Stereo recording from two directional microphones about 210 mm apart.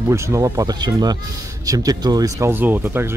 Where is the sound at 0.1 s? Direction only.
15° right (ahead or behind).